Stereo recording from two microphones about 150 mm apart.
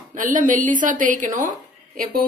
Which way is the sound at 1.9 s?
80° right.